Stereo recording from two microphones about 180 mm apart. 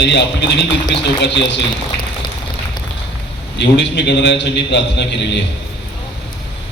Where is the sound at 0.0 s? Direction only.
75° left (ahead or behind).